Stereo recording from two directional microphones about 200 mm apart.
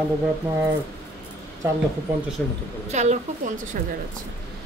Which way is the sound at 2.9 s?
35° right (ahead or behind).